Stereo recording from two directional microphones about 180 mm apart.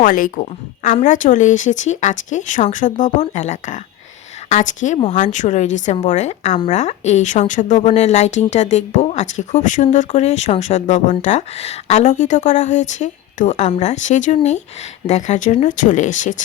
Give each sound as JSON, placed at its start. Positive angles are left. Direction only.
{"t": 0.0, "sound": "a woman's voice", "side_deg": 50}